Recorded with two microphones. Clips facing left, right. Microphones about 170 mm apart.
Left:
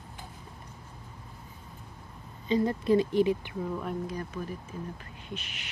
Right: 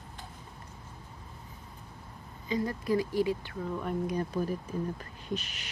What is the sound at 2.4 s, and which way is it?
Speech, 25° left (ahead or behind).